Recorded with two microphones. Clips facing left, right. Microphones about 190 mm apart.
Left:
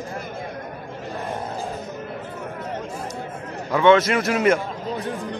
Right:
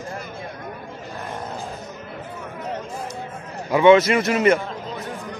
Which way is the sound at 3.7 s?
5° right (ahead or behind).